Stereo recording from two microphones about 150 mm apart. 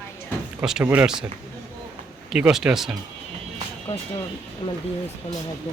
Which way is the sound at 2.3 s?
5° right (ahead or behind).